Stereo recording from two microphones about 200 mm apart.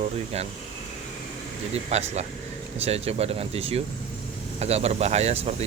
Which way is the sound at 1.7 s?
35° right (ahead or behind).